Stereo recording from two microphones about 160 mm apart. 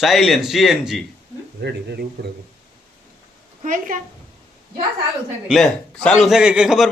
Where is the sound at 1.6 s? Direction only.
90° right.